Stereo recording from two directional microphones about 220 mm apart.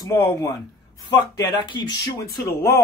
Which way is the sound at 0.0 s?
15° left (ahead or behind).